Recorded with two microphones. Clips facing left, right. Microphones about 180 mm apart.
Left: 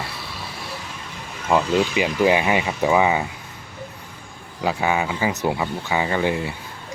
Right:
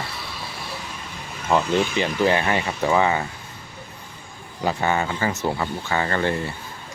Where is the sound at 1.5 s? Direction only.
10° left (ahead or behind).